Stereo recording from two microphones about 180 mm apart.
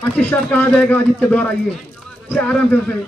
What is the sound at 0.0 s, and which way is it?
A man's voice, 10° left (ahead or behind).